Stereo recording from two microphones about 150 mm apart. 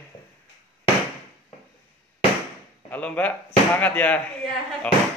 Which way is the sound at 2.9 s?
10° left (ahead or behind).